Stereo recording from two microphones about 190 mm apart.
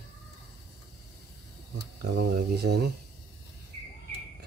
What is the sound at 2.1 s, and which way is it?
Speech, 60° right (ahead or behind).